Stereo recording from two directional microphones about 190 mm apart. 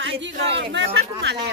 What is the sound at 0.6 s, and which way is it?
Speech, 65° right (ahead or behind).